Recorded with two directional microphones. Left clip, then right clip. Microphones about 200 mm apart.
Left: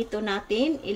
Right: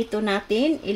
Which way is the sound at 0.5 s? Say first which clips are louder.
Right 2 dB; 15° right (ahead or behind).